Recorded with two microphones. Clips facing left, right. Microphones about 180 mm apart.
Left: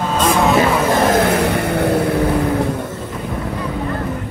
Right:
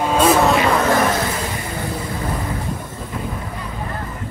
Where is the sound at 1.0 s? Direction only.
60° left (ahead or behind).